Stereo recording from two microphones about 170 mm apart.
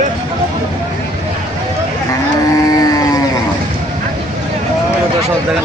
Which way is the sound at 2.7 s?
20° left (ahead or behind).